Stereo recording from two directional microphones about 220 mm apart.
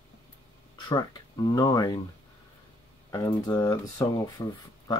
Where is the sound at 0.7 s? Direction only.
20° left (ahead or behind).